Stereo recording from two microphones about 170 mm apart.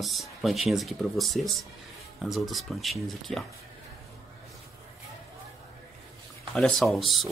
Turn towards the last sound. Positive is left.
turn(degrees=0)  # may be behind; listen again after turning